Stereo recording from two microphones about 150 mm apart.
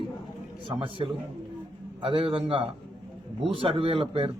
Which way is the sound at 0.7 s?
35° right (ahead or behind).